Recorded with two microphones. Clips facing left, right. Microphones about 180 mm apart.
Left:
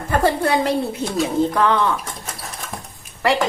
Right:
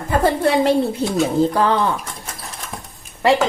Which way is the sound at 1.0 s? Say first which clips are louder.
Right 2 dB; 35° right (ahead or behind).